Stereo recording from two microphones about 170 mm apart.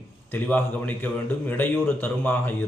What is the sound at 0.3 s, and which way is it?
A man's voice, 10° left (ahead or behind).